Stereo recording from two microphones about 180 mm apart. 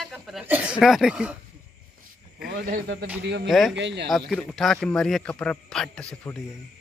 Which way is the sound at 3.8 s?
80° right.